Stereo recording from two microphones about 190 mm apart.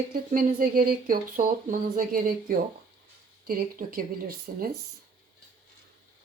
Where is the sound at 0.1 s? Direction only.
50° right (ahead or behind).